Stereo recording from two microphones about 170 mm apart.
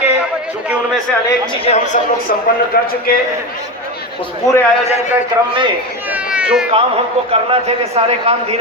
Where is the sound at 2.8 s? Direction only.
60° left (ahead or behind).